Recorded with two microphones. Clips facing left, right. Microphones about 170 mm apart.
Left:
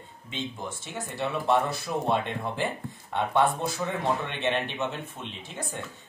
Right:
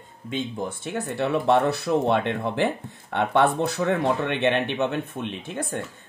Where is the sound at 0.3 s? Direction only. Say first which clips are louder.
Right 6 dB; 55° right (ahead or behind).